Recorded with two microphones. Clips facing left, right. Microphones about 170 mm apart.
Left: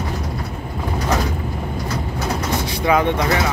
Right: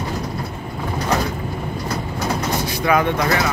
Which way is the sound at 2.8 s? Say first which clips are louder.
Left 1 dB; 25° left (ahead or behind).